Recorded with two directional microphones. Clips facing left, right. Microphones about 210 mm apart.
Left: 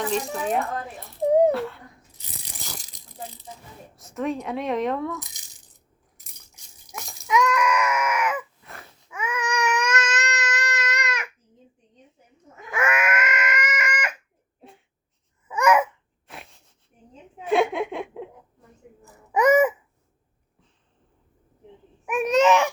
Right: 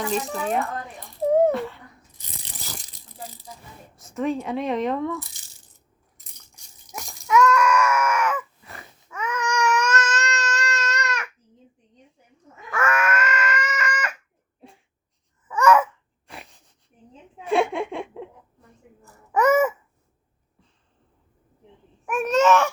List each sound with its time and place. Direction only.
0.0 s speech: centre (ahead or behind)
1.3 s a sound: 15° left (ahead or behind)
1.5 s a sound: centre (ahead or behind)
2.4 s rattle: centre (ahead or behind)
3.9 s speech: centre (ahead or behind)
5.2 s rattle: 15° left (ahead or behind)
7.1 s a sound: 15° left (ahead or behind)
9.0 s baby cry: 10° left (ahead or behind)
12.7 s cat: 15° left (ahead or behind)
15.4 s babbling: 15° left (ahead or behind)
16.2 s wheeze: centre (ahead or behind)
17.4 s laughter: centre (ahead or behind)
19.0 s babbling: 10° left (ahead or behind)
22.0 s a child's voice: 15° left (ahead or behind)